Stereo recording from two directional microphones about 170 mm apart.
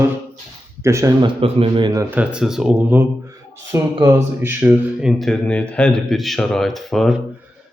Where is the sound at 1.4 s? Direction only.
35° right (ahead or behind).